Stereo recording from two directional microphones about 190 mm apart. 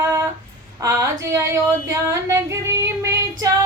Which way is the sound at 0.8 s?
15° right (ahead or behind).